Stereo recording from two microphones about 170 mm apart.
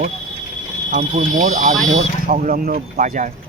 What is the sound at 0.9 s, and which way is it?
Speech, 40° right (ahead or behind).